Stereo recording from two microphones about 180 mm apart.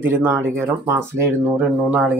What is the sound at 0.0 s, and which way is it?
Speech, 10° right (ahead or behind).